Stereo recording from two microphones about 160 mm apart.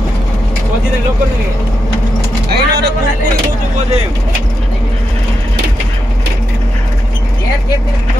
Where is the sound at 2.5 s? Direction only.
90° right.